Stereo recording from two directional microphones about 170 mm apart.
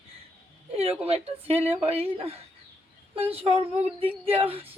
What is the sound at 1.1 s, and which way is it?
Speech, 35° right (ahead or behind).